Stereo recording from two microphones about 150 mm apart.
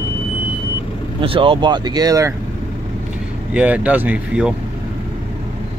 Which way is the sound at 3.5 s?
10° right (ahead or behind).